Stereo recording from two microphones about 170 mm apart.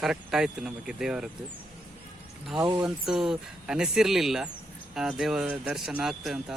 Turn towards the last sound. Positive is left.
turn(degrees=-5)  # may be behind; listen again after turning